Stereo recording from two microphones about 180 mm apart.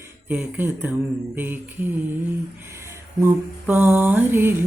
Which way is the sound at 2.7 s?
15° right (ahead or behind).